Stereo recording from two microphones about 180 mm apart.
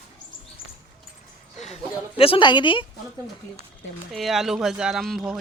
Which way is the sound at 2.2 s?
30° left (ahead or behind).